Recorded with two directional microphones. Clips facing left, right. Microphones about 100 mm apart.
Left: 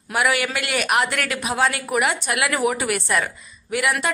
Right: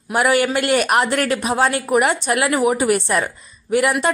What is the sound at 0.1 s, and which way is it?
A woman's voice, 35° right (ahead or behind).